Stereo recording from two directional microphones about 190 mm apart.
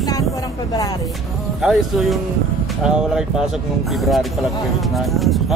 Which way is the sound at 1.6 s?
Centre (ahead or behind).